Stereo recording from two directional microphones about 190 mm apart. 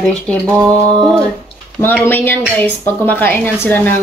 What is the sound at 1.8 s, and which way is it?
Speech, 10° left (ahead or behind).